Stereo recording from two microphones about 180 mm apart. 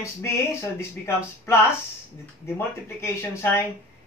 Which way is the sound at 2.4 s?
15° left (ahead or behind).